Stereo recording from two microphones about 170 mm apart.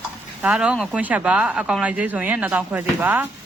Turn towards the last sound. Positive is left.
turn(degrees=-10)  # may be behind; listen again after turning